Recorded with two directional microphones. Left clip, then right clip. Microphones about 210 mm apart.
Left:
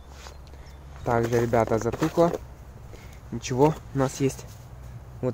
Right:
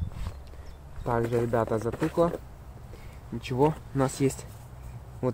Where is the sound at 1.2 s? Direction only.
35° left (ahead or behind).